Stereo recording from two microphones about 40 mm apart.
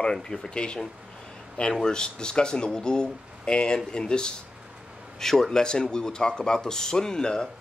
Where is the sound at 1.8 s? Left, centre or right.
Centre.